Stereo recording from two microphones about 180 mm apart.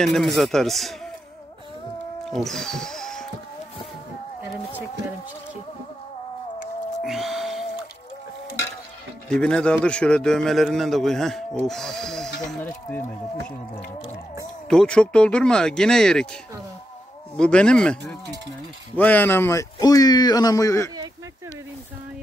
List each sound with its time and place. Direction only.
0.0 s a man's voice: centre (ahead or behind)
2.3 s speech: centre (ahead or behind)
7.0 s music: centre (ahead or behind)
9.3 s a man's voice: 5° left (ahead or behind)
14.7 s a man's voice: 5° left (ahead or behind)
17.4 s a man's voice: 5° left (ahead or behind)
18.9 s speech: 10° left (ahead or behind)